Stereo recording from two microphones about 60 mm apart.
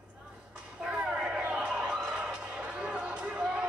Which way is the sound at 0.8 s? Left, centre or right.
Centre.